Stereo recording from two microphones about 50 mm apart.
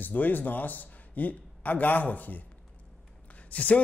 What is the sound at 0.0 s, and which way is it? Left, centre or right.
A man's voice, left.